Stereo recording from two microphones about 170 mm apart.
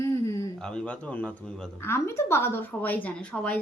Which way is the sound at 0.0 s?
20° left (ahead or behind).